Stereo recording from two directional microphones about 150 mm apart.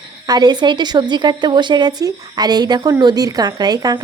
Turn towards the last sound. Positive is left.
turn(degrees=-25)  # may be behind; listen again after turning